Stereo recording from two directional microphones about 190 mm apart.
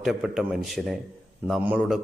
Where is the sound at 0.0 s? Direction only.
Centre (ahead or behind).